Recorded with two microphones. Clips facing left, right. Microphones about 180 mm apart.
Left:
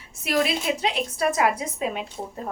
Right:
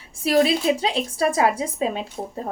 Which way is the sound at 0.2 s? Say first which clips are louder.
Right 5 dB; 30° right (ahead or behind).